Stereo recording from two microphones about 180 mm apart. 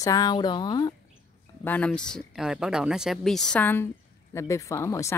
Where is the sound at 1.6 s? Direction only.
10° left (ahead or behind).